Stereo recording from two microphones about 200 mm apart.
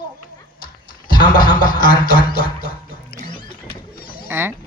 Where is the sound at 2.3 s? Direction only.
45° left (ahead or behind).